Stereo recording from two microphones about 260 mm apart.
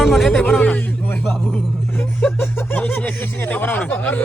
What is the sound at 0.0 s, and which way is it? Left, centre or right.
A man's voice, centre.